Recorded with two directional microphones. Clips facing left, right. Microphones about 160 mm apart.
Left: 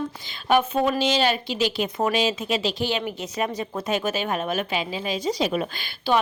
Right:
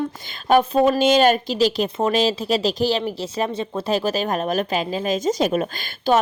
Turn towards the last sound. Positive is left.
turn(degrees=-45)  # may be behind; listen again after turning